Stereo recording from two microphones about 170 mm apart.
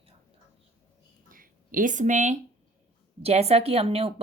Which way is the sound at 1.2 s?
55° right (ahead or behind).